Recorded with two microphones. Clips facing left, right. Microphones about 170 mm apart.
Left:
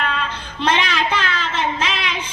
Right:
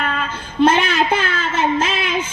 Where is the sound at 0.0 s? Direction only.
45° right (ahead or behind).